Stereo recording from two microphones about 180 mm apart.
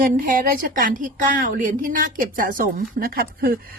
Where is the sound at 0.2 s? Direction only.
50° right (ahead or behind).